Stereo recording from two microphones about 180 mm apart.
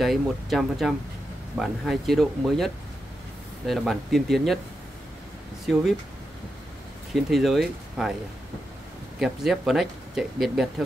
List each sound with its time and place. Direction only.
0.0 s speech: centre (ahead or behind)
5.7 s speech: centre (ahead or behind)
7.2 s speech: centre (ahead or behind)
9.2 s speech: centre (ahead or behind)